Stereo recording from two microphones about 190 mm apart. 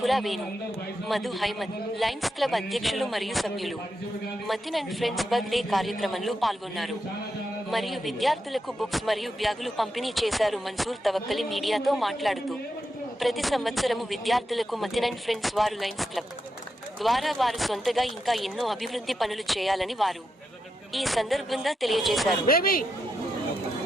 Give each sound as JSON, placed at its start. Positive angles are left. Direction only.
{"t": 0.0, "sound": "speech", "side_deg": 0}
{"t": 22.4, "sound": "speech", "side_deg": 50}